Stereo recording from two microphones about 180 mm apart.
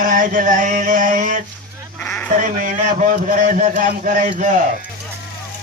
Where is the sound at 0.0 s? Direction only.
45° right (ahead or behind).